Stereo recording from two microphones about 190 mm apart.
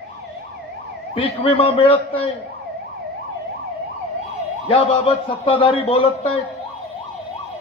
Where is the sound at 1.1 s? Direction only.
30° left (ahead or behind).